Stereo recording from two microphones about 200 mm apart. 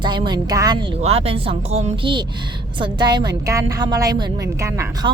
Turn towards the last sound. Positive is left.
turn(degrees=-15)  # may be behind; listen again after turning